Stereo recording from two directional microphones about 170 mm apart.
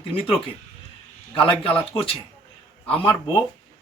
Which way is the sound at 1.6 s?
35° left (ahead or behind).